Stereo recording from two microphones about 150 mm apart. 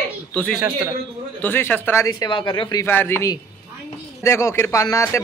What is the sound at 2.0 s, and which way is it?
Speech, 30° left (ahead or behind).